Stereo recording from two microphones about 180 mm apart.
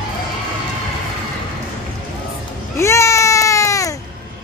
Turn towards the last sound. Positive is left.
turn(degrees=15)  # may be behind; listen again after turning